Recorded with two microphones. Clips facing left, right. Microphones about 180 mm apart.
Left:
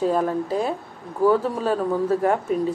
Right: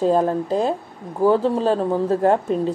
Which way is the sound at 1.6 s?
25° right (ahead or behind).